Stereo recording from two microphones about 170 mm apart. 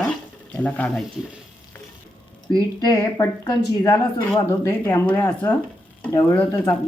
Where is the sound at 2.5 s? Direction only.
25° left (ahead or behind).